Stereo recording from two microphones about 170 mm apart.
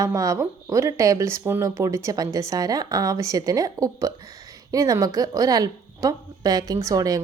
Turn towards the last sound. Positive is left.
turn(degrees=-20)  # may be behind; listen again after turning